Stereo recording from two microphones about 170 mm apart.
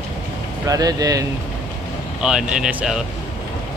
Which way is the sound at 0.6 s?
20° right (ahead or behind).